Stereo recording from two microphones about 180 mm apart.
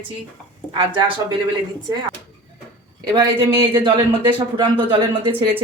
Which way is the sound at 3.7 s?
25° right (ahead or behind).